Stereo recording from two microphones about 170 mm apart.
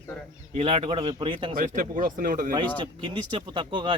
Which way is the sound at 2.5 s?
30° right (ahead or behind).